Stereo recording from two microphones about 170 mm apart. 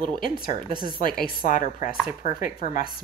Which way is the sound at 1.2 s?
55° left (ahead or behind).